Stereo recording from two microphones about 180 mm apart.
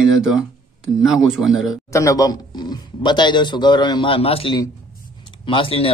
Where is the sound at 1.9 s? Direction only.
15° left (ahead or behind).